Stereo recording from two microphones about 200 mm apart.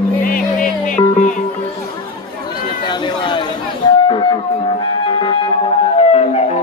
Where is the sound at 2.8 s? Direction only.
25° left (ahead or behind).